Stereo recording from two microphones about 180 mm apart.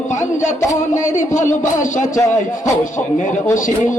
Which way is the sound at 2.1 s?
15° left (ahead or behind).